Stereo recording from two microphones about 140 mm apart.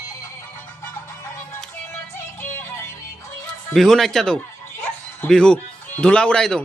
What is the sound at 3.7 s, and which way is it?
Speech, centre (ahead or behind).